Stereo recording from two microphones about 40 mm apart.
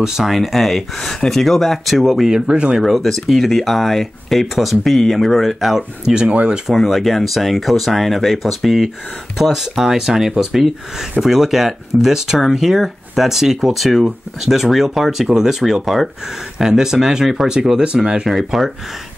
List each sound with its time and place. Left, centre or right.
0.2 s speech: centre
2.2 s speech: right
2.8 s speech: centre
6.1 s speech: right
6.7 s speech: centre
17.8 s speech: right
18.2 s speech: centre